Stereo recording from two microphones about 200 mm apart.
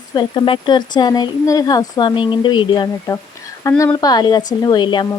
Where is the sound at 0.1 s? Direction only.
20° left (ahead or behind).